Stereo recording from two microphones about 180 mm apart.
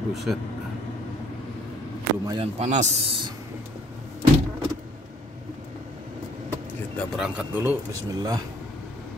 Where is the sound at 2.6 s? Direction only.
40° right (ahead or behind).